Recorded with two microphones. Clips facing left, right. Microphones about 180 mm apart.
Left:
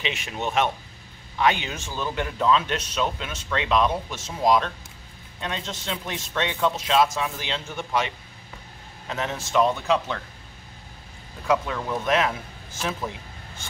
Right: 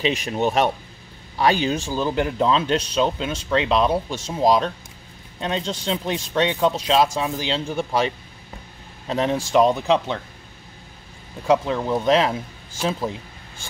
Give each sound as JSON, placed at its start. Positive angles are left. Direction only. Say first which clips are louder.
{"t": 0.0, "sound": "speech", "louder": "right 8 dB", "side_deg": -35}
{"t": 11.4, "sound": "a man's voice", "louder": "right 5 dB", "side_deg": -25}